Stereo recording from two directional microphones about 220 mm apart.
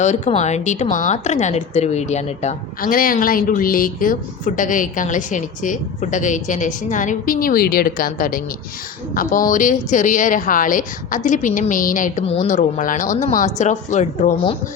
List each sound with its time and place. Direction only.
0.0 s a woman's voice: 30° left (ahead or behind)